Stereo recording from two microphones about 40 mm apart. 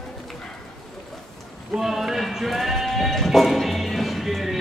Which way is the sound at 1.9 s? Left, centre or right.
Centre.